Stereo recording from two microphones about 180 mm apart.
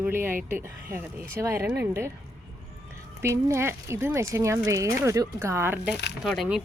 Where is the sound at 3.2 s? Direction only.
15° right (ahead or behind).